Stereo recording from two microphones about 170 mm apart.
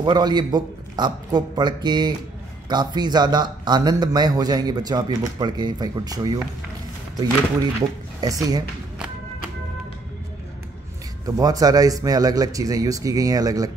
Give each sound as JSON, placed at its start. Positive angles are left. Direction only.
{"t": 0.0, "sound": "a man's voice", "side_deg": -25}
{"t": 8.2, "sound": "a man's voice", "side_deg": -20}
{"t": 11.2, "sound": "a man's voice", "side_deg": -20}